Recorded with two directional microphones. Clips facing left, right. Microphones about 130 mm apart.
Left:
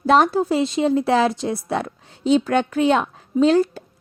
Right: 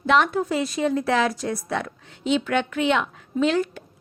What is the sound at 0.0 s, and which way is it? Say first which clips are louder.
A woman's voice: left 4 dB; 35° left (ahead or behind).